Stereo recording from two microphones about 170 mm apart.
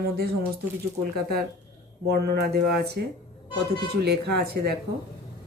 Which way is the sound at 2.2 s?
70° right (ahead or behind).